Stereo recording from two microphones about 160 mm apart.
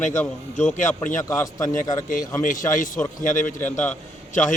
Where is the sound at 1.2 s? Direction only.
20° left (ahead or behind).